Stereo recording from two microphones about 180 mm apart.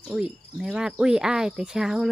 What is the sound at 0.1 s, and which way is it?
Cricket, 5° right (ahead or behind).